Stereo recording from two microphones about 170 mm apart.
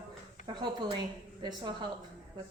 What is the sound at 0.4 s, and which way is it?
A woman's voice, 25° right (ahead or behind).